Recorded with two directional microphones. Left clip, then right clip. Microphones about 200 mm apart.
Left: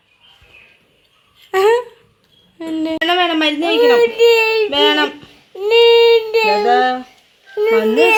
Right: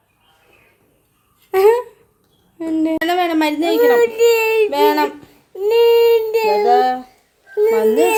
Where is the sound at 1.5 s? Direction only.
5° right (ahead or behind).